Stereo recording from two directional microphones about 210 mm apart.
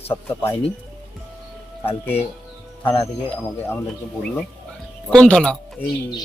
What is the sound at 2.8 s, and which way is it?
Speech, 10° left (ahead or behind).